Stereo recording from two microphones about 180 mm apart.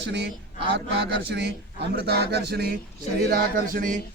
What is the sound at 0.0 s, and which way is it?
Speech, 70° right (ahead or behind).